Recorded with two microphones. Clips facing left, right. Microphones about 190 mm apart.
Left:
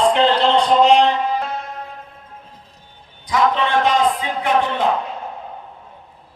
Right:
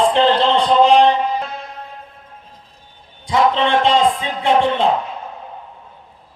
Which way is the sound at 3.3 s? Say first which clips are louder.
Right 2 dB; 25° right (ahead or behind).